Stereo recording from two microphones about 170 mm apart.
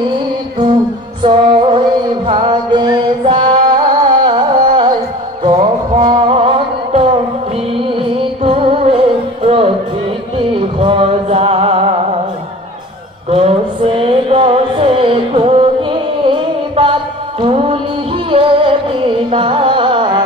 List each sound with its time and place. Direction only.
1.2 s music: 25° right (ahead or behind)
13.3 s music: 35° right (ahead or behind)